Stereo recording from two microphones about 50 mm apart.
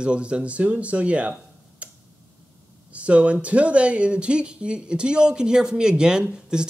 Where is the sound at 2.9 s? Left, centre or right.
Right.